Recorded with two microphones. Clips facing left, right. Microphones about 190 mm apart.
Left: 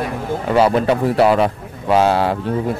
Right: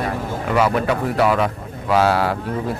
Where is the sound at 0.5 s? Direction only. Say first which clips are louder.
Left 4 dB; 30° left (ahead or behind).